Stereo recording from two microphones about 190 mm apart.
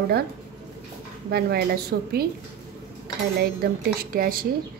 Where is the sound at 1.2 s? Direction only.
55° right (ahead or behind).